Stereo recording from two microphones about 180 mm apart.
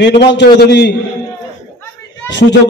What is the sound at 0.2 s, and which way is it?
Speech, 70° left (ahead or behind).